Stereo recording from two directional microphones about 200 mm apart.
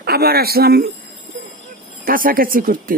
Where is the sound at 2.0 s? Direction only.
45° right (ahead or behind).